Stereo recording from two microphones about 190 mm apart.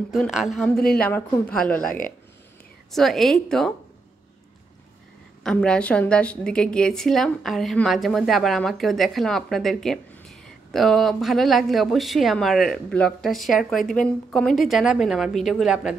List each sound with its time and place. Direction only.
0.1 s speech: centre (ahead or behind)
1.9 s speech: 45° left (ahead or behind)
2.9 s speech: centre (ahead or behind)
5.4 s speech: 5° left (ahead or behind)